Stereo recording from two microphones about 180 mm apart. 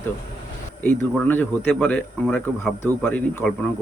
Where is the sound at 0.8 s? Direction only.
10° left (ahead or behind).